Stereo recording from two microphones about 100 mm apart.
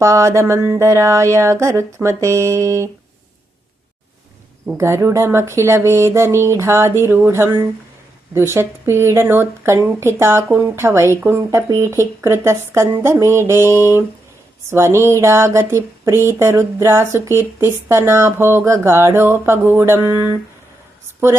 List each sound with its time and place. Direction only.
0.0 s speech: 30° right (ahead or behind)
4.8 s speech: 25° right (ahead or behind)